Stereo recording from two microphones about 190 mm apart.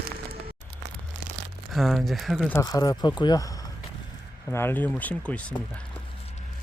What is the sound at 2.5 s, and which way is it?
Speech, 20° left (ahead or behind).